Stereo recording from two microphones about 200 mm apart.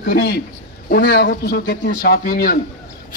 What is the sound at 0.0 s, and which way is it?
A man's voice, 50° left (ahead or behind).